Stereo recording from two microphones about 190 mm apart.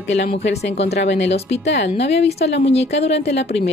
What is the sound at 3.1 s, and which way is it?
Speech, 65° left (ahead or behind).